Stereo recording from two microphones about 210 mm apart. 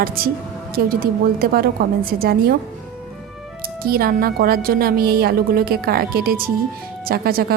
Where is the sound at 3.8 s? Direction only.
45° right (ahead or behind).